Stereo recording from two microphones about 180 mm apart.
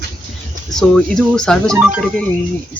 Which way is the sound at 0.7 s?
Centre (ahead or behind).